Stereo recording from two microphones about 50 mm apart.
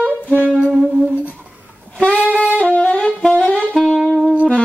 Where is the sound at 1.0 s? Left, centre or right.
Right.